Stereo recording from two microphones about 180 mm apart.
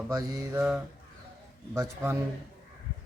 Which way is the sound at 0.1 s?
20° right (ahead or behind).